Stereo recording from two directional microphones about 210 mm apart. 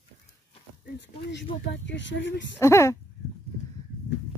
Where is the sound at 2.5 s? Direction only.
15° left (ahead or behind).